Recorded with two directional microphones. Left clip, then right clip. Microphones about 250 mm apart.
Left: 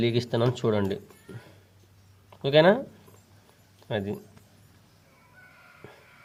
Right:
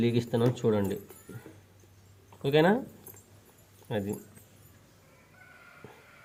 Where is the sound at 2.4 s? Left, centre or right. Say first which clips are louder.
Left 5 dB; left.